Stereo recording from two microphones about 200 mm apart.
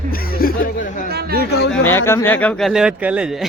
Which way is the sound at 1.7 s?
10° left (ahead or behind).